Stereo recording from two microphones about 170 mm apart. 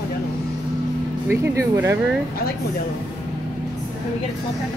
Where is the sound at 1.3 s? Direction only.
15° right (ahead or behind).